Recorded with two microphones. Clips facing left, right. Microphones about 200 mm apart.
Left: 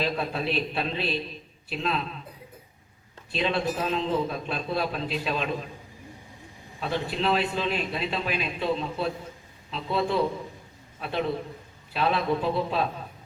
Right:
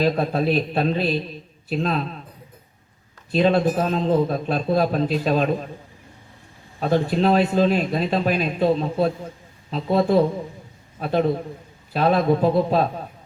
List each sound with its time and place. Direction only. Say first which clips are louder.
0.0 s speech: right 8 dB; 45° right (ahead or behind)
3.3 s speech: right 9 dB; 45° right (ahead or behind)
6.7 s speech: right 9 dB; 45° right (ahead or behind)